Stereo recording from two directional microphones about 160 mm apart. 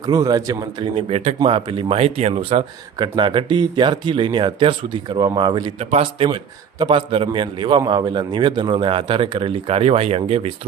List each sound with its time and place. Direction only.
0.0 s a man's voice: 25° right (ahead or behind)
1.1 s speech: 45° right (ahead or behind)
1.4 s a man's voice: 30° right (ahead or behind)
5.8 s a man's voice: 40° right (ahead or behind)